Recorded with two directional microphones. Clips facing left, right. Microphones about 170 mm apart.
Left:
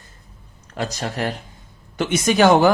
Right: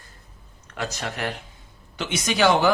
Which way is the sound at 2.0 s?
50° left (ahead or behind).